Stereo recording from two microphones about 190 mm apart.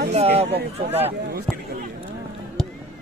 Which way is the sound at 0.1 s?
35° right (ahead or behind).